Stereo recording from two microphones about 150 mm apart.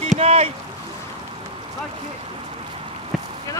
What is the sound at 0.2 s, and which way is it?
Rowboat, 45° right (ahead or behind).